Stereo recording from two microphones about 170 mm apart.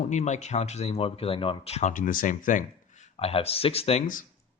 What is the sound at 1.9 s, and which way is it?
Speech, 55° left (ahead or behind).